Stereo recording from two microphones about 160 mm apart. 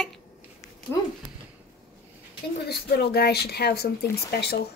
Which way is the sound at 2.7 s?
80° left.